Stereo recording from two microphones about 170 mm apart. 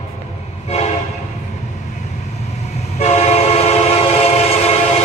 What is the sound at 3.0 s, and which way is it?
Train, 40° left (ahead or behind).